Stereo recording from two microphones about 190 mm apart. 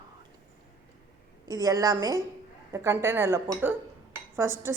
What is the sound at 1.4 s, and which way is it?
A woman's voice, 20° right (ahead or behind).